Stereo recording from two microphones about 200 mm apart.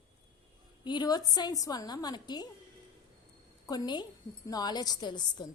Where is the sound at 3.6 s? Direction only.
20° left (ahead or behind).